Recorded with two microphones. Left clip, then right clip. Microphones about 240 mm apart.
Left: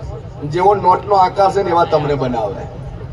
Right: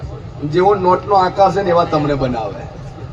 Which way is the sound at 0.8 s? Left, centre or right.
Left.